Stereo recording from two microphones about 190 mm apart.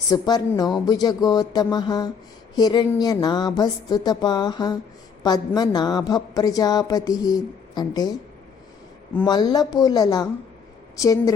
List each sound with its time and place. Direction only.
0.1 s a woman's voice: 20° left (ahead or behind)
9.2 s a woman's voice: 20° left (ahead or behind)